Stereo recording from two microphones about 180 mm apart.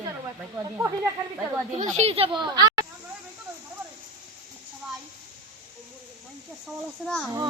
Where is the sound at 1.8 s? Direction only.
40° right (ahead or behind).